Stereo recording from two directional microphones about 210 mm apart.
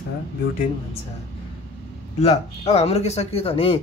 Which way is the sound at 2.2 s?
30° left (ahead or behind).